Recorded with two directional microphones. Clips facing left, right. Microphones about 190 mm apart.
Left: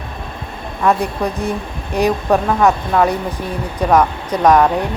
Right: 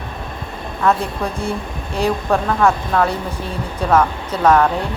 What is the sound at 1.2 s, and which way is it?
Speech, 15° left (ahead or behind).